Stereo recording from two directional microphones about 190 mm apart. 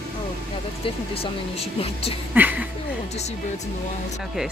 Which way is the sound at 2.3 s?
10° right (ahead or behind).